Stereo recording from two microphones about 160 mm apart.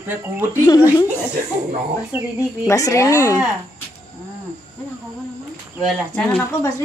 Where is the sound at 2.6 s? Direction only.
20° left (ahead or behind).